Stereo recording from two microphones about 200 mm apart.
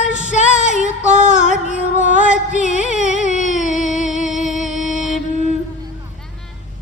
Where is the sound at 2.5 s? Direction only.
35° left (ahead or behind).